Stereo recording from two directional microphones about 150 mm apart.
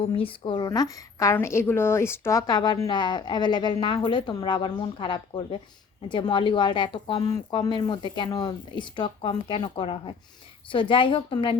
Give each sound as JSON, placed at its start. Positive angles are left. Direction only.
{"t": 0.2, "sound": "a woman's voice", "side_deg": 35}